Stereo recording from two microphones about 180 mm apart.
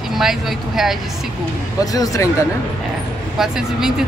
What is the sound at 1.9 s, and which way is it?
Speech, 20° left (ahead or behind).